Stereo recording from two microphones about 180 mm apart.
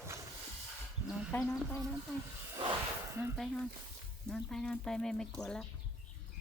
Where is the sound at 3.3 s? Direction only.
5° left (ahead or behind).